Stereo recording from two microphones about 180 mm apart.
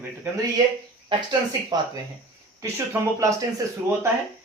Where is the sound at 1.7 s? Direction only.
20° right (ahead or behind).